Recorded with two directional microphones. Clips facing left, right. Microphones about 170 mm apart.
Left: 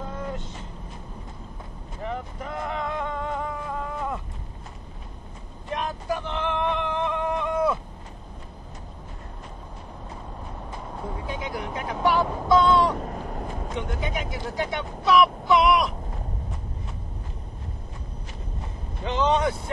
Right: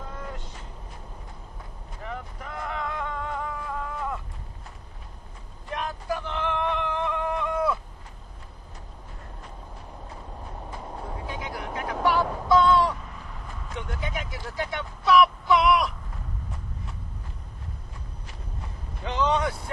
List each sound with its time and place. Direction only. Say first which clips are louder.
0.2 s vehicle: left 5 dB; 25° left (ahead or behind)
2.0 s boat: left 5 dB; 25° left (ahead or behind)
5.7 s a sound: left 2 dB; 20° left (ahead or behind)
11.2 s vehicle: left 3 dB; 20° left (ahead or behind)
12.9 s a sound: left 10 dB; 50° left (ahead or behind)
13.7 s speech: left 2 dB; 20° left (ahead or behind)
19.0 s speech: left 2 dB; 25° left (ahead or behind)